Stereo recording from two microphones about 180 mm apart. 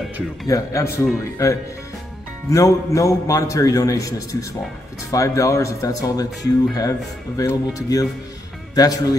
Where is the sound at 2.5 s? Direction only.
15° left (ahead or behind).